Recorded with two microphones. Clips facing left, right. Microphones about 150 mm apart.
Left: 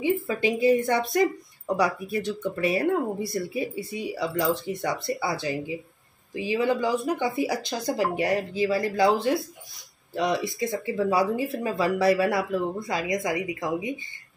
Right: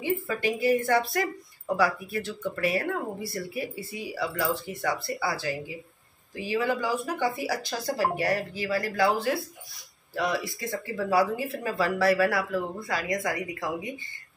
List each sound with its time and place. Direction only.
0.0 s speech: 15° left (ahead or behind)